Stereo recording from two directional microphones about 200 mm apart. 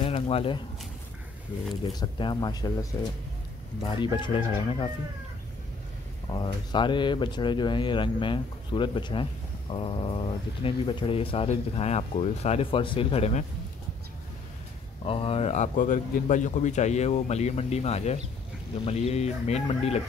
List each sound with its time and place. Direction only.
0.0 s a sound: 25° left (ahead or behind)
1.9 s speech: 20° left (ahead or behind)
6.3 s speech: 20° left (ahead or behind)
15.0 s a man's voice: 30° left (ahead or behind)